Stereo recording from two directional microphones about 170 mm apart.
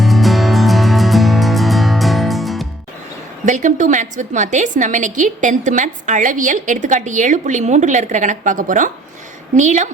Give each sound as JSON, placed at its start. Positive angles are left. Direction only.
{"t": 0.0, "sound": "music", "side_deg": 0}
{"t": 3.4, "sound": "a woman's voice", "side_deg": -45}